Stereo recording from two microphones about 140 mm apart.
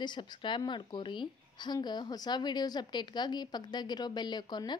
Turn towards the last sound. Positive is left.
turn(degrees=30)  # may be behind; listen again after turning